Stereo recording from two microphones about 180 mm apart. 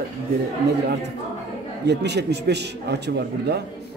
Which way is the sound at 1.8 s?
70° right (ahead or behind).